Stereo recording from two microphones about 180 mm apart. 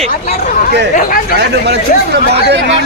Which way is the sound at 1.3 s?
65° right (ahead or behind).